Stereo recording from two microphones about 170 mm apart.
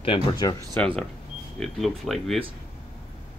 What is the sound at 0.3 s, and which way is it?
Speech, 25° left (ahead or behind).